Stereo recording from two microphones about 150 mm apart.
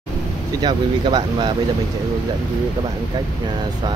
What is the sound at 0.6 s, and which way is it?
Speech, 30° right (ahead or behind).